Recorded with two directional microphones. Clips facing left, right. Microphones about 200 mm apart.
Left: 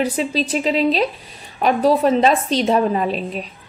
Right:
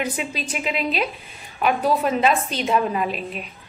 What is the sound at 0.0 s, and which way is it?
A woman's voice, 35° left (ahead or behind).